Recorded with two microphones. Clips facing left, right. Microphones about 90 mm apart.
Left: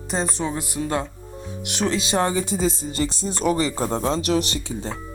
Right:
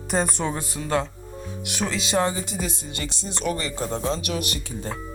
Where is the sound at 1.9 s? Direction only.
35° left (ahead or behind).